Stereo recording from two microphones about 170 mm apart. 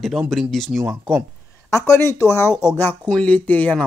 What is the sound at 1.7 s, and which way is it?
Speech, 15° left (ahead or behind).